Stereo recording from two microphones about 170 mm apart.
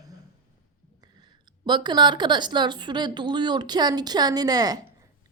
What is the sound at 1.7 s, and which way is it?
Speech, 25° right (ahead or behind).